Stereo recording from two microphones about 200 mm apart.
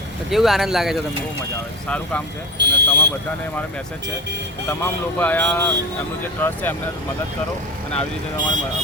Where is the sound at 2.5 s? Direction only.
60° right (ahead or behind).